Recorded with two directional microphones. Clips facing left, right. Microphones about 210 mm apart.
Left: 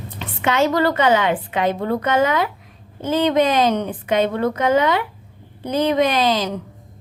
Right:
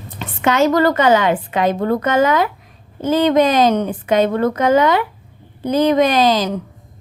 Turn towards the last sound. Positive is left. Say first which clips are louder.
# right 4 dB
turn(degrees=-40)  # may be behind; listen again after turning